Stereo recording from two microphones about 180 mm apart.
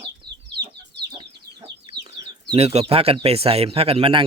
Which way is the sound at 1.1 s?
30° right (ahead or behind).